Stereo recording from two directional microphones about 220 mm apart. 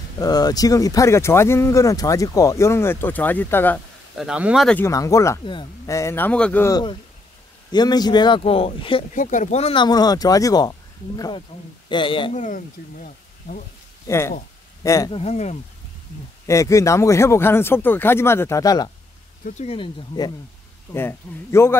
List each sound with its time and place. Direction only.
0.2 s speech: 15° left (ahead or behind)
4.3 s speech: 5° right (ahead or behind); by 9.0 s 25° left (ahead or behind)
9.1 s speech: 35° left (ahead or behind)
14.0 s speech: 10° left (ahead or behind); by 15.6 s 30° left (ahead or behind)
16.4 s speech: 15° left (ahead or behind)
19.4 s speech: 30° left (ahead or behind); by 21.7 s 10° left (ahead or behind)